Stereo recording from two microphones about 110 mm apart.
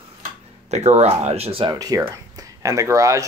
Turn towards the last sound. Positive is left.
turn(degrees=-30)  # may be behind; listen again after turning